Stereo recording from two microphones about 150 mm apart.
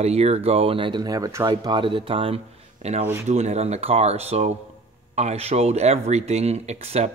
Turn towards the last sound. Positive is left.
turn(degrees=-45)  # may be behind; listen again after turning